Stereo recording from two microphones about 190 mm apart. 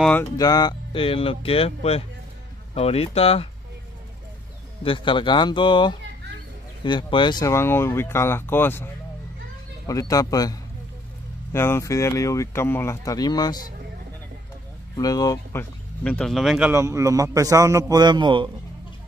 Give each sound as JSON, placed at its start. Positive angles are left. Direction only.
{"t": 0.0, "sound": "speech", "side_deg": 5}
{"t": 0.4, "sound": "speech", "side_deg": 20}
{"t": 4.8, "sound": "speech", "side_deg": 25}
{"t": 15.0, "sound": "speech", "side_deg": 20}
{"t": 16.0, "sound": "a man's voice", "side_deg": 5}